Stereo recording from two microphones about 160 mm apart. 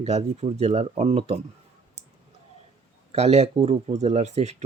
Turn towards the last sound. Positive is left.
turn(degrees=-45)  # may be behind; listen again after turning